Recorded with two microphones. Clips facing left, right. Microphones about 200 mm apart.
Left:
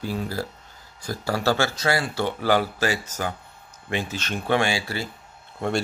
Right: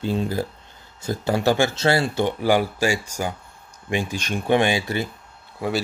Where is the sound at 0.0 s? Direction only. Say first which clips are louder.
Right 5 dB; 25° right (ahead or behind).